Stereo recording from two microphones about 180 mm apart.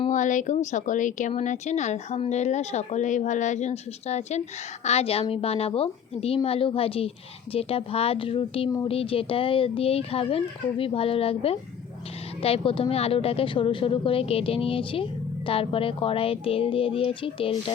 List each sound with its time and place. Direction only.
0.1 s a woman's voice: 45° left (ahead or behind)